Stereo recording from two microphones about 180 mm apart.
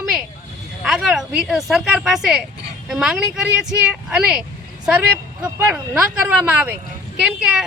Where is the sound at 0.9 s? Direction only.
5° right (ahead or behind).